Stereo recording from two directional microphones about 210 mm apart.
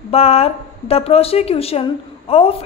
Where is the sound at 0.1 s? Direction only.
30° left (ahead or behind).